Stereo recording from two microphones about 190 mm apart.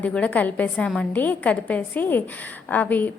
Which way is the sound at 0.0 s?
5° left (ahead or behind).